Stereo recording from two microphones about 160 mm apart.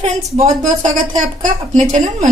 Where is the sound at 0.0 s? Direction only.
45° right (ahead or behind).